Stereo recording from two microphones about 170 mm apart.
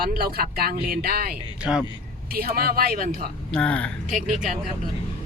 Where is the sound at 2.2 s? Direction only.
60° right (ahead or behind).